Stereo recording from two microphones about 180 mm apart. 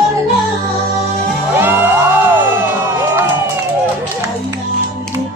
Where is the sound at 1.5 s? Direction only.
10° right (ahead or behind).